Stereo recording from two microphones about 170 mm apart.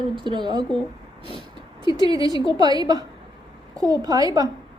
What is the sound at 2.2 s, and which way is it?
Child singing, 20° right (ahead or behind).